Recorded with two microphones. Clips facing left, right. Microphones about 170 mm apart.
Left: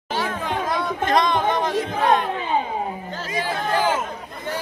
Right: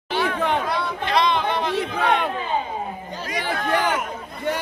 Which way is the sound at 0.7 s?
45° left (ahead or behind).